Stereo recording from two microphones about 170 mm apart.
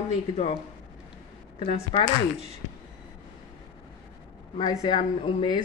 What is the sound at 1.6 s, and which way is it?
Speech, 35° left (ahead or behind).